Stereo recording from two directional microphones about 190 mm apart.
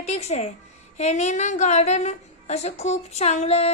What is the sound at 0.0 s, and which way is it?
A woman's voice, 35° left (ahead or behind).